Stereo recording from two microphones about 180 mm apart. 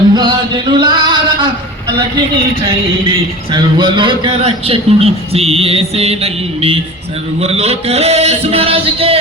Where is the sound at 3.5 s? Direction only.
25° right (ahead or behind).